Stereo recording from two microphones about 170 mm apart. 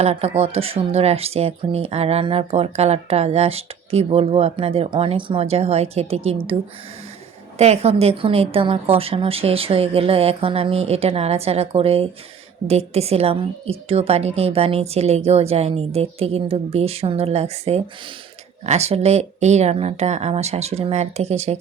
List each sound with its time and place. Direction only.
0.0 s speech: 40° right (ahead or behind)
7.6 s speech: 40° right (ahead or behind)